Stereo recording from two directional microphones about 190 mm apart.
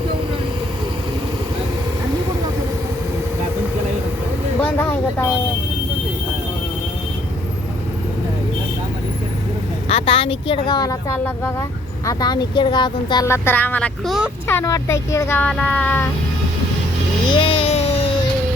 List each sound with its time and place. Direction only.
4.6 s vehicle: 10° left (ahead or behind)
9.9 s speech: 30° left (ahead or behind); by 14.3 s centre (ahead or behind)
14.4 s speech: 15° left (ahead or behind)
17.3 s a sound: 25° left (ahead or behind)